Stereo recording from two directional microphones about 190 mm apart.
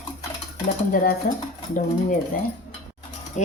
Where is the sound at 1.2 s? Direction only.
45° left (ahead or behind).